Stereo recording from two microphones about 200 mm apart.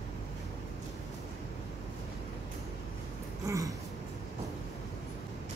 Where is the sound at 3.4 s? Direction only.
15° right (ahead or behind).